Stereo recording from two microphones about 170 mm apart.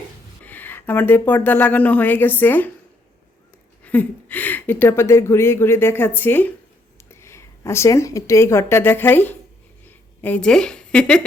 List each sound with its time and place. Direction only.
0.4 s speech: 10° left (ahead or behind)
3.8 s speech: 10° left (ahead or behind)
9.8 s a sound: 10° left (ahead or behind)